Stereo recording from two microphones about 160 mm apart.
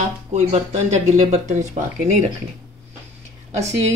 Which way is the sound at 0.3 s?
45° right (ahead or behind).